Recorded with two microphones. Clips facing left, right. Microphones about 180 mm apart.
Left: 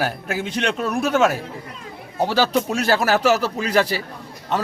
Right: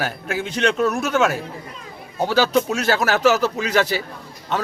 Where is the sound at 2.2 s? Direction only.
Centre (ahead or behind).